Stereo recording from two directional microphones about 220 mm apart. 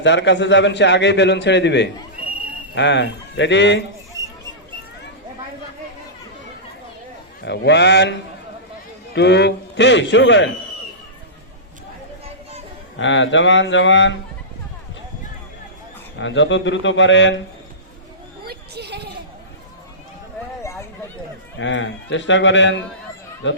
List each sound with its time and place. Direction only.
0.0 s a man's voice: 55° left (ahead or behind)
7.4 s a man's voice: 50° left (ahead or behind)
9.1 s a man's voice: 50° left (ahead or behind)
13.0 s speech: 55° left (ahead or behind)
16.1 s speech: 55° left (ahead or behind)
18.4 s a sound: 50° right (ahead or behind)
20.6 s a sound: 15° left (ahead or behind)
21.6 s speech: 55° left (ahead or behind)